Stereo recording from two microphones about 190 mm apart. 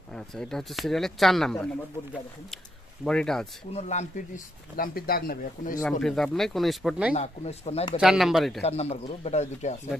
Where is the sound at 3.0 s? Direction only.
5° left (ahead or behind).